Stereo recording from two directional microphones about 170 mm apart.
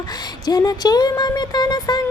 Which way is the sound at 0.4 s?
20° left (ahead or behind).